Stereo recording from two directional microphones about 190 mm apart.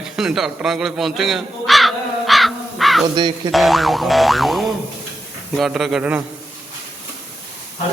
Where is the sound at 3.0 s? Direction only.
25° right (ahead or behind).